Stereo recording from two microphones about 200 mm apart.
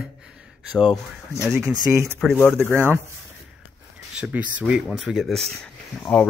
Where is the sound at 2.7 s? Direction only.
10° right (ahead or behind).